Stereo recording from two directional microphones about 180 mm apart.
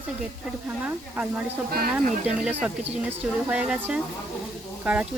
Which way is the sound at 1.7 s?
55° right (ahead or behind).